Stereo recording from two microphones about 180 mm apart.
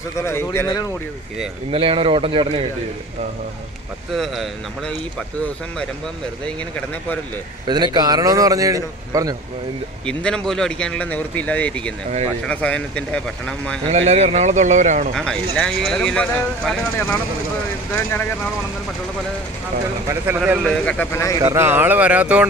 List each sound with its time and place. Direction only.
0.2 s speech: 15° left (ahead or behind)
1.7 s a man's voice: 30° right (ahead or behind)
4.1 s speech: centre (ahead or behind)
7.6 s a man's voice: 25° right (ahead or behind)
10.0 s speech: 5° left (ahead or behind)
13.8 s speech: 35° right (ahead or behind)
15.1 s speech: 5° left (ahead or behind)
20.1 s speech: 10° right (ahead or behind)
20.6 s speech: 5° left (ahead or behind)
21.4 s speech: 15° right (ahead or behind)